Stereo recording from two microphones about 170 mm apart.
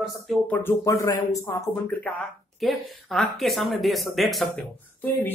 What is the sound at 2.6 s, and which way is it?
Speech, centre (ahead or behind).